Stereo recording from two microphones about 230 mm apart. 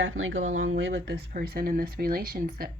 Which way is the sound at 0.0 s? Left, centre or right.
Right.